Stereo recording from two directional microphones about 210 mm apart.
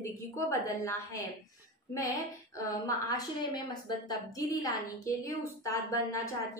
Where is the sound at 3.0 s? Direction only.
15° left (ahead or behind).